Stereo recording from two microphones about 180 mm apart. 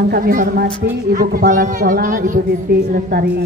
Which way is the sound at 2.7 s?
60° right (ahead or behind).